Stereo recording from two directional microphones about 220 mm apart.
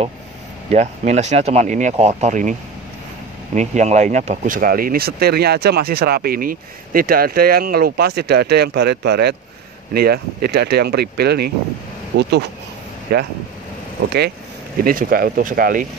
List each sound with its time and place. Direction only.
0.7 s speech: 30° right (ahead or behind)
3.5 s speech: 30° right (ahead or behind)
14.9 s speech: 40° right (ahead or behind)